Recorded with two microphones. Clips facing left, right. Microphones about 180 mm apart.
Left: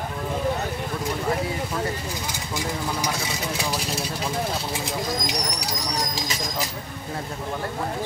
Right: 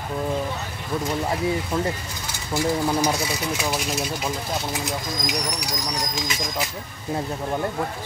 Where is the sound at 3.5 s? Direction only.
35° left (ahead or behind).